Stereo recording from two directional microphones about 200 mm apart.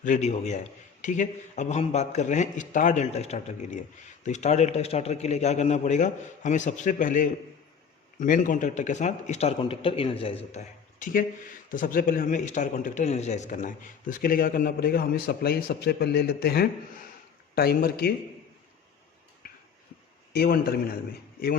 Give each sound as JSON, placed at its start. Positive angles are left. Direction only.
{"t": 0.0, "sound": "a man's voice", "side_deg": 35}
{"t": 20.3, "sound": "a man's voice", "side_deg": 50}